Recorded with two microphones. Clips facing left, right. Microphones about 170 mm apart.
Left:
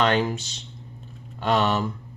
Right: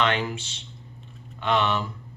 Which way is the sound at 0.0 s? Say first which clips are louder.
Left 3 dB; 40° left (ahead or behind).